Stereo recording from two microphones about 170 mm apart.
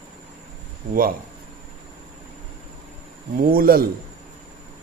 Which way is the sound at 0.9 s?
55° right (ahead or behind).